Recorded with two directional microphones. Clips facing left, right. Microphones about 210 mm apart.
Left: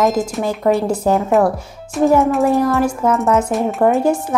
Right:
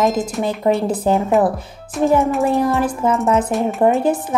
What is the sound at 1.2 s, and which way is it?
Speech, centre (ahead or behind).